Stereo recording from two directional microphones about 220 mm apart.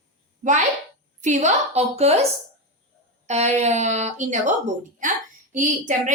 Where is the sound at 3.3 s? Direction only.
30° right (ahead or behind).